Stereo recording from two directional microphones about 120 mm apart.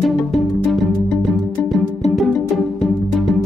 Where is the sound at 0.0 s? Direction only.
Centre (ahead or behind).